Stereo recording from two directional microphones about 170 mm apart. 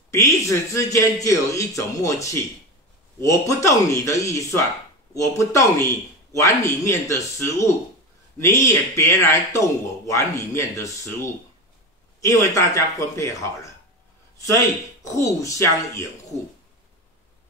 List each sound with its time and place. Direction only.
0.1 s a man's voice: 20° left (ahead or behind)
15.1 s a man's voice: 20° left (ahead or behind)